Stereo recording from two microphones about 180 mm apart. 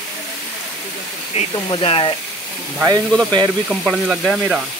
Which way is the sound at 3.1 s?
5° left (ahead or behind).